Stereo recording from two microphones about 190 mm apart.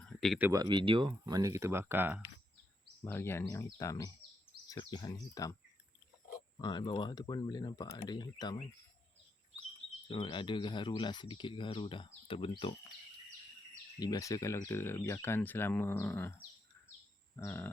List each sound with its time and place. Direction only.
0.0 s a sound: 5° left (ahead or behind)
0.3 s speech: 10° right (ahead or behind)
0.6 s speech: 25° right (ahead or behind)
3.0 s speech: 10° left (ahead or behind)
6.6 s speech: 20° left (ahead or behind)
10.1 s speech: 25° left (ahead or behind)
14.0 s speech: 20° left (ahead or behind)
17.3 s speech: 15° left (ahead or behind)